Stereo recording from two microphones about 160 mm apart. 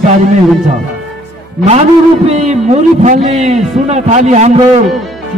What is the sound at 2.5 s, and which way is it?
A man's voice, 45° right (ahead or behind).